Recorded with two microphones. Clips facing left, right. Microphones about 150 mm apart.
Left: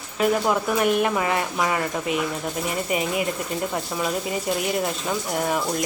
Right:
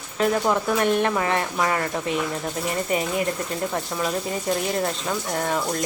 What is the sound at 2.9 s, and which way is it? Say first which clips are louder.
Speech: even; 10° left (ahead or behind).